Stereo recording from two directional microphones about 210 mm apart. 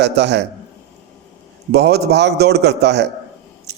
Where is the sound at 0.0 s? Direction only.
55° right (ahead or behind).